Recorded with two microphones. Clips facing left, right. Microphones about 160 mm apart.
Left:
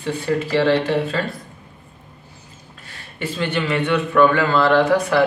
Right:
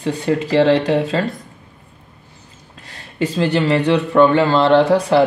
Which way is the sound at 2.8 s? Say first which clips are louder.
Right 7 dB; 35° right (ahead or behind).